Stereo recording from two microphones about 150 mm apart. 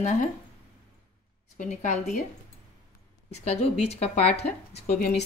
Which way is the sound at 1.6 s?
55° left (ahead or behind).